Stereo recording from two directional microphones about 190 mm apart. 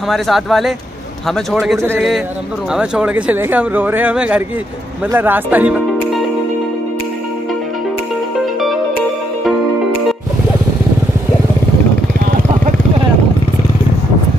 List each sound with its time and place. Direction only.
0.1 s speech: centre (ahead or behind)